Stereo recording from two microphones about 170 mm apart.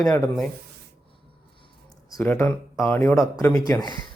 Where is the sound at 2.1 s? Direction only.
15° left (ahead or behind).